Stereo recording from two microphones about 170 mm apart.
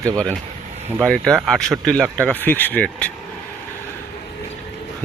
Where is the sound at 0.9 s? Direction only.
5° left (ahead or behind).